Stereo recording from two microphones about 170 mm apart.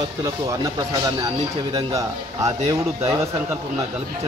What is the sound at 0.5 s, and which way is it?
A man's voice, 20° right (ahead or behind).